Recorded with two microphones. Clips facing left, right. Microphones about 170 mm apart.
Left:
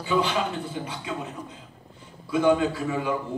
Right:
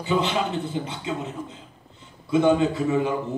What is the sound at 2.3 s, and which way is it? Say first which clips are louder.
Speech: right 2 dB; 25° right (ahead or behind).